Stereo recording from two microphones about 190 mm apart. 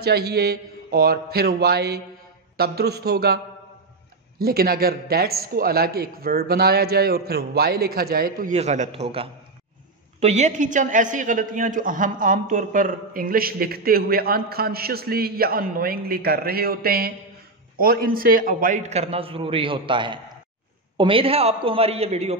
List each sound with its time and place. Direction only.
0.0 s speech: 55° right (ahead or behind)
4.4 s a man's voice: 55° right (ahead or behind)
8.5 s a man's voice: 40° right (ahead or behind)